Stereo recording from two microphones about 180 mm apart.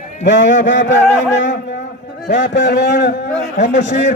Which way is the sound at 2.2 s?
75° left (ahead or behind).